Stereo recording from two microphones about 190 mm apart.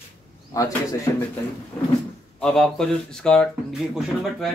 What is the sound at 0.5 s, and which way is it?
Speech, 15° left (ahead or behind).